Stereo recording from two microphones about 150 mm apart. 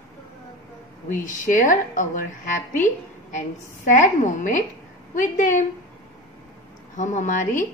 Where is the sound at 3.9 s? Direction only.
55° left (ahead or behind).